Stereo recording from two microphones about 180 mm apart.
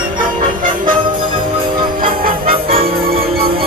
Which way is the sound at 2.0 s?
55° right (ahead or behind).